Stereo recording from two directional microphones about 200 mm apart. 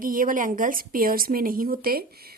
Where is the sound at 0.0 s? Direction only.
45° right (ahead or behind).